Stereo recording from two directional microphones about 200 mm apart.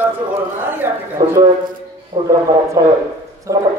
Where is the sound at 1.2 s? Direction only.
20° right (ahead or behind).